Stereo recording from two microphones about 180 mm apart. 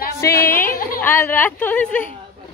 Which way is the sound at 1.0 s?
10° left (ahead or behind).